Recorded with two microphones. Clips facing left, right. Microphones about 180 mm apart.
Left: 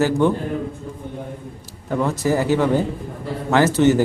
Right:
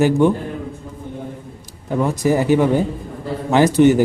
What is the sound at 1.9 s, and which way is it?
A man's voice, 15° right (ahead or behind).